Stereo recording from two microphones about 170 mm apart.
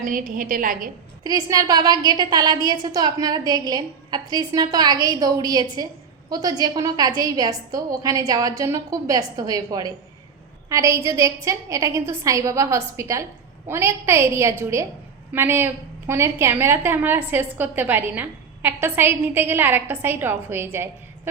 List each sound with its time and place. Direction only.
0.0 s a woman's voice: 50° right (ahead or behind)
1.2 s a woman's voice: 20° right (ahead or behind)